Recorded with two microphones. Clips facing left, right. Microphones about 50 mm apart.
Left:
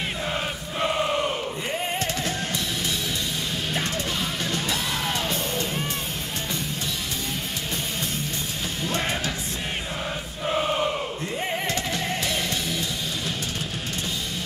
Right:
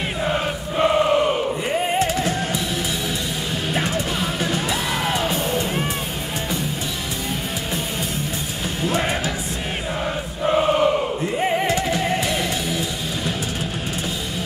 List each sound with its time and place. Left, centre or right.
0.2 s chant: centre
3.7 s music: centre
8.8 s music: centre
10.4 s music: centre